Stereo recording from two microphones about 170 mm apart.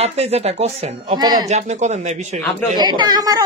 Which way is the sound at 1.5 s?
40° right (ahead or behind).